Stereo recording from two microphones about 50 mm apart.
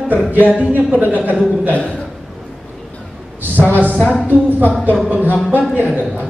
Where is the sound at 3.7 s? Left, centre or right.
Right.